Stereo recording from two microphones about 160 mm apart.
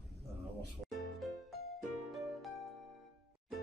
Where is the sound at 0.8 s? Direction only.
Centre (ahead or behind).